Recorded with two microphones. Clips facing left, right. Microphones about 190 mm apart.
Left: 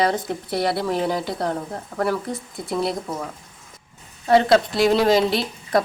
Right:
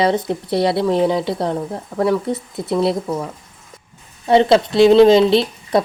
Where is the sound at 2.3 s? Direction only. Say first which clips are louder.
Right 7 dB; 25° right (ahead or behind).